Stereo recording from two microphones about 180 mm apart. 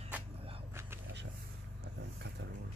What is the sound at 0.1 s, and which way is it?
Vehicle, 10° right (ahead or behind).